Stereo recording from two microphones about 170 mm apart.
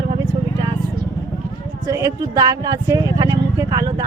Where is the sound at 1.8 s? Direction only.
20° right (ahead or behind).